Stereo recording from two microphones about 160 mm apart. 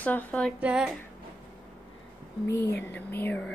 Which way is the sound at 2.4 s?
15° left (ahead or behind).